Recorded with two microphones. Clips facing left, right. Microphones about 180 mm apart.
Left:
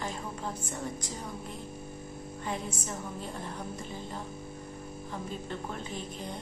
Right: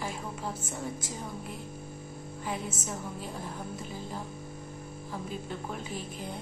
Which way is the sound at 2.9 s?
5° right (ahead or behind).